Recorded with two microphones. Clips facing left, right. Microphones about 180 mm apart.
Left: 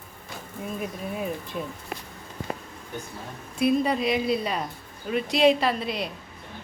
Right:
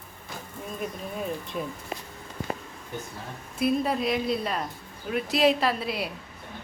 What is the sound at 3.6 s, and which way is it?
Speech, centre (ahead or behind).